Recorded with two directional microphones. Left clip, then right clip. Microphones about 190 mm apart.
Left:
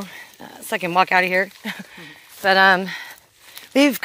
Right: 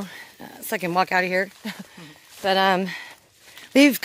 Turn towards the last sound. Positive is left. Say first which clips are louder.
# even
turn(degrees=-20)  # may be behind; listen again after turning